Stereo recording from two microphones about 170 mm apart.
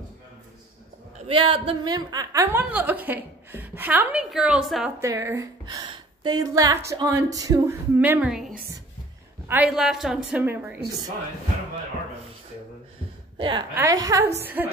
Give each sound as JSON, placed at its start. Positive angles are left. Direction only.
{"t": 1.2, "sound": "speech", "side_deg": -30}
{"t": 5.0, "sound": "speech", "side_deg": -15}
{"t": 13.4, "sound": "a woman's voice", "side_deg": -30}